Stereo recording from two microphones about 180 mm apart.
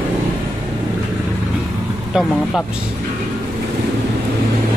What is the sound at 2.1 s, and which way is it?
Speech, centre (ahead or behind).